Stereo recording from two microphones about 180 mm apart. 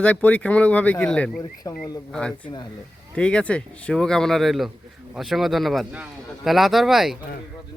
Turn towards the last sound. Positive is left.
turn(degrees=0)  # may be behind; listen again after turning